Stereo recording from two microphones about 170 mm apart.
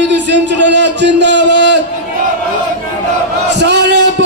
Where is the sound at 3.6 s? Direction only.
85° right.